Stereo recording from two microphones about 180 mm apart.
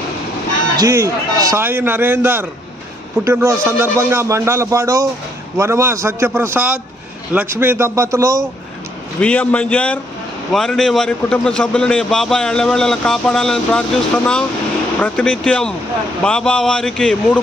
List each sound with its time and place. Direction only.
0.7 s a man's voice: 15° right (ahead or behind)
9.2 s a man's voice: 5° left (ahead or behind)